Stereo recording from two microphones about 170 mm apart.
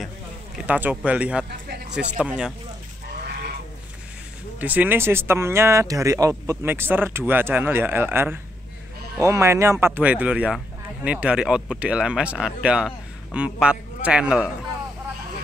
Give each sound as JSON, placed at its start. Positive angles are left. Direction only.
{"t": 0.7, "sound": "speech", "side_deg": -10}
{"t": 3.3, "sound": "goose", "side_deg": -70}
{"t": 4.6, "sound": "speech", "side_deg": -10}